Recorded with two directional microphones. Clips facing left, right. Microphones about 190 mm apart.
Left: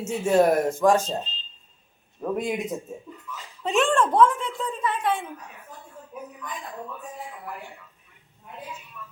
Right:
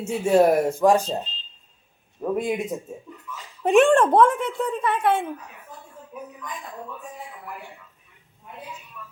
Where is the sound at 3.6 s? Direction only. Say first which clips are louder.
Right 6 dB; 55° right (ahead or behind).